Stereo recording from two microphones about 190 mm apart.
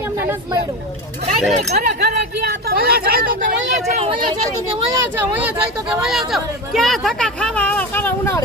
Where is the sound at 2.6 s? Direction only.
55° right (ahead or behind); by 4.1 s 35° right (ahead or behind).